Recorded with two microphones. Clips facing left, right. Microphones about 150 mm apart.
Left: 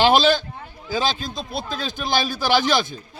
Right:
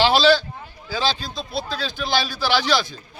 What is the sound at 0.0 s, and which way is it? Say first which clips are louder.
Speech: even; 50° left (ahead or behind).